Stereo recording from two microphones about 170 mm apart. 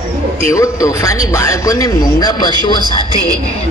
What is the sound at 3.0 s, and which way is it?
Speech, 20° right (ahead or behind).